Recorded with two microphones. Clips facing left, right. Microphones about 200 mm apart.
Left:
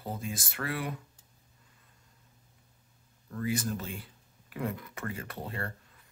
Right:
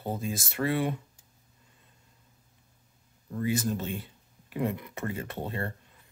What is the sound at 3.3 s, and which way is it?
Speech, 25° right (ahead or behind).